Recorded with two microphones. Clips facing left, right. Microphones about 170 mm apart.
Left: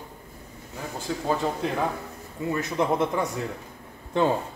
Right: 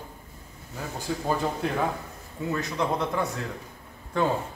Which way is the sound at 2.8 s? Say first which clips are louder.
Left 4 dB; 20° left (ahead or behind).